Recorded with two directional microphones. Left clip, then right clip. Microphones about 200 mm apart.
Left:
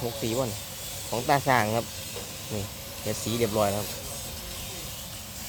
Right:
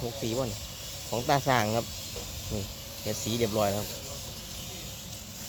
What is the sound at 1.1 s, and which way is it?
Speech, 5° right (ahead or behind).